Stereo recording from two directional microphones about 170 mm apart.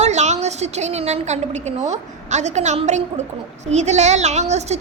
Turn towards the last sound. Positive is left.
turn(degrees=-40)  # may be behind; listen again after turning